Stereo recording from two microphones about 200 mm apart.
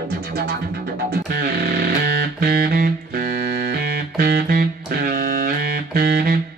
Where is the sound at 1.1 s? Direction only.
50° right (ahead or behind).